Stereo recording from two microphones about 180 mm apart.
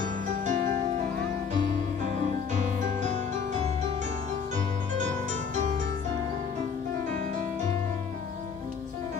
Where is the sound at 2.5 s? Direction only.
40° right (ahead or behind).